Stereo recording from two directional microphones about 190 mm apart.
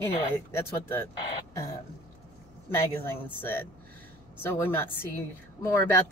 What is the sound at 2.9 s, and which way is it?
Speech, 10° left (ahead or behind).